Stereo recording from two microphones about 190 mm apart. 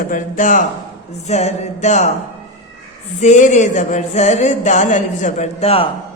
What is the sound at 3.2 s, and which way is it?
Speech, 40° left (ahead or behind).